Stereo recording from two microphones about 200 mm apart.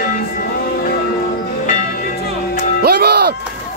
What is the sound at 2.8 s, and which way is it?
Music, 50° right (ahead or behind).